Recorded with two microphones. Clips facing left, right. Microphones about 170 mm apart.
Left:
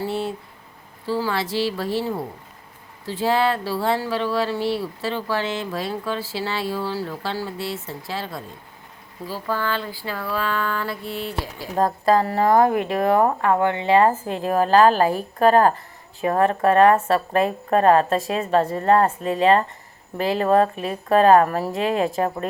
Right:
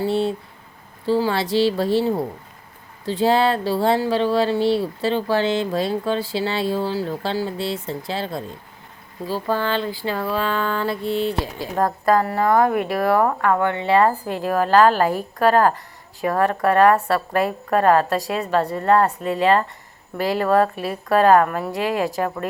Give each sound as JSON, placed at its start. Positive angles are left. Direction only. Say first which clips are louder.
{"t": 0.0, "sound": "speech", "louder": "right 5 dB", "side_deg": -25}
{"t": 11.8, "sound": "speech", "louder": "even", "side_deg": 25}